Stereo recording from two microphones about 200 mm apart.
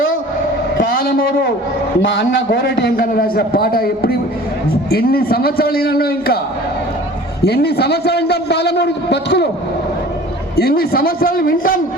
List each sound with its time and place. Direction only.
0.8 s a sound: 45° left (ahead or behind)
2.0 s a man's voice: 65° left (ahead or behind); by 6.4 s 50° left (ahead or behind)
7.4 s a man's voice: 55° left (ahead or behind)
10.6 s a man's voice: 50° left (ahead or behind)